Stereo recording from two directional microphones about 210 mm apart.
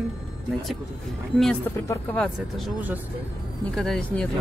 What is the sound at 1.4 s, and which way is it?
Speech, 5° left (ahead or behind).